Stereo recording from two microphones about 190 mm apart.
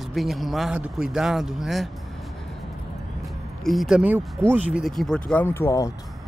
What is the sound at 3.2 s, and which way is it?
Music, centre (ahead or behind).